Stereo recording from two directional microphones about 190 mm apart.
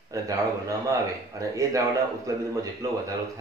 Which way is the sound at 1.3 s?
15° right (ahead or behind).